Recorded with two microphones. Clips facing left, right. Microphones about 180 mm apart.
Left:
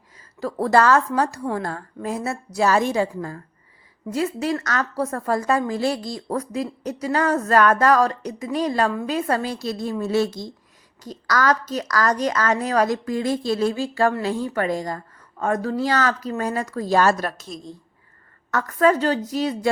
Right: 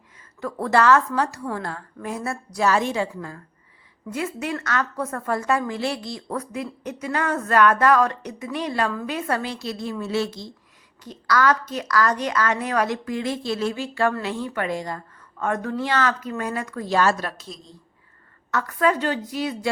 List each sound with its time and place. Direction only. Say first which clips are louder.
0.2 s a woman's voice: left 4 dB; 35° left (ahead or behind)
2.0 s speech: left 3 dB; 25° left (ahead or behind)
2.6 s a woman's voice: left 2 dB; 40° left (ahead or behind)
8.9 s speech: left 3 dB; 25° left (ahead or behind)
9.1 s a woman's voice: left 3 dB; 35° left (ahead or behind)